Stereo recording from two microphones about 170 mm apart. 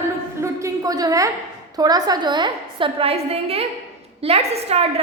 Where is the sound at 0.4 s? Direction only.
20° right (ahead or behind).